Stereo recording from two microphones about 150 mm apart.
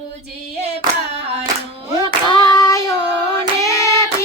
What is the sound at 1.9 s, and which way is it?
Child singing, 25° left (ahead or behind).